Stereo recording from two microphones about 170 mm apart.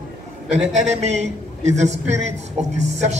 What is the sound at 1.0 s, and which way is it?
A man's voice, 40° right (ahead or behind).